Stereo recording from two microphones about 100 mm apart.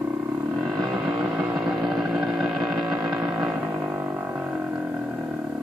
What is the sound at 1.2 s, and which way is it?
Vehicle, 15° right (ahead or behind).